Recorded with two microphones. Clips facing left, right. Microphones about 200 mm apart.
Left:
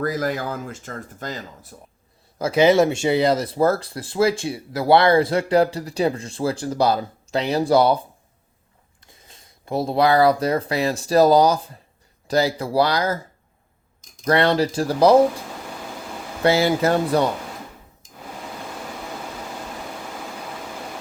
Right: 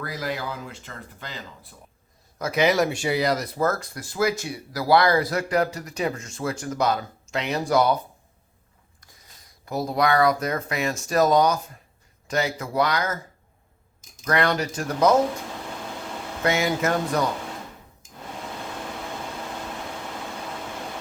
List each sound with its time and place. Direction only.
0.0 s speech: 45° left (ahead or behind)
2.4 s speech: 30° left (ahead or behind)
9.1 s speech: 25° left (ahead or behind)
14.3 s speech: 30° left (ahead or behind)
16.4 s speech: 30° left (ahead or behind)
18.9 s vehicle: 5° left (ahead or behind)